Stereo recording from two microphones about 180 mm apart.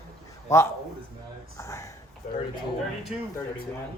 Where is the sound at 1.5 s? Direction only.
15° left (ahead or behind).